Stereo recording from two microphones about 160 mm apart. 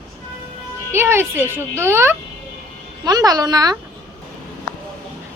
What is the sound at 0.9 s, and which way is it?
Speech, 15° right (ahead or behind).